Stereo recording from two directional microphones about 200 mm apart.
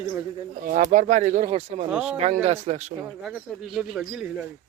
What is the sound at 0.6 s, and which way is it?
Speech, 40° right (ahead or behind).